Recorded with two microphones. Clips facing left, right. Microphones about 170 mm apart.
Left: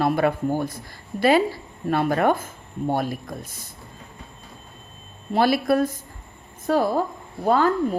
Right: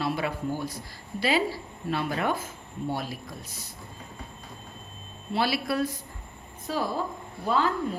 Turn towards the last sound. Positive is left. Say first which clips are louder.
# left 6 dB
turn(degrees=50)  # may be behind; listen again after turning